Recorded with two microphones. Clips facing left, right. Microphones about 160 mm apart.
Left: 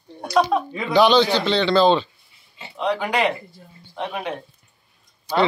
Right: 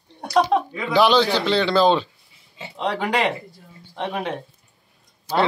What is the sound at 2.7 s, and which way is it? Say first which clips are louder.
Speech: left 1 dB; 25° right (ahead or behind).